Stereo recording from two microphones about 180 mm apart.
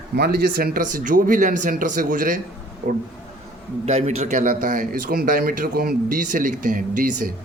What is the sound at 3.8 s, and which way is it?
A man's voice, 35° right (ahead or behind).